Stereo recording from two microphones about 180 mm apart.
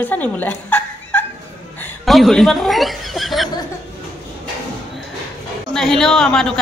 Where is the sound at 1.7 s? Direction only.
5° left (ahead or behind).